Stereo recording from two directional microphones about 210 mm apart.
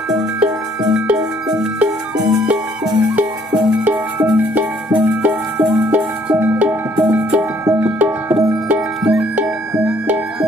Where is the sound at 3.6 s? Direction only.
5° right (ahead or behind).